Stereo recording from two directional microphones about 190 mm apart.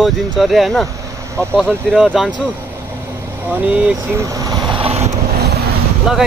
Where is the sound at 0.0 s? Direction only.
Centre (ahead or behind).